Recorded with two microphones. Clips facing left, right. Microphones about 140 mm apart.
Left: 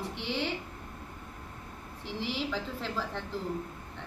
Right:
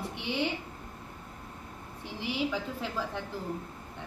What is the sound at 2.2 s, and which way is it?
A woman's voice, 15° right (ahead or behind).